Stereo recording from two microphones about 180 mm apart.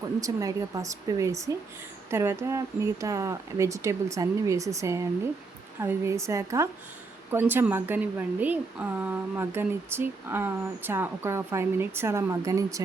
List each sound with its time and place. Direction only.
0.2 s speech: 20° right (ahead or behind)